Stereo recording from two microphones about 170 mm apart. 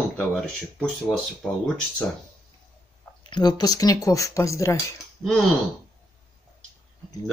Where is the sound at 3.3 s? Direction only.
25° left (ahead or behind).